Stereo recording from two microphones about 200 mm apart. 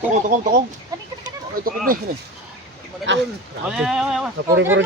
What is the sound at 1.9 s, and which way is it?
Speech, 45° right (ahead or behind).